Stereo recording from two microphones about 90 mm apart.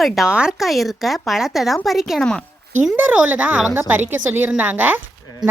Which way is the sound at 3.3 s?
15° right (ahead or behind).